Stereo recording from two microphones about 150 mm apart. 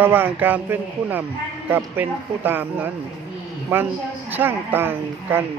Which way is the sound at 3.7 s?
15° right (ahead or behind).